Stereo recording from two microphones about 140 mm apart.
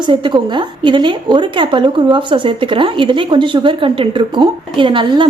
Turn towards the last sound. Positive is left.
turn(degrees=-35)  # may be behind; listen again after turning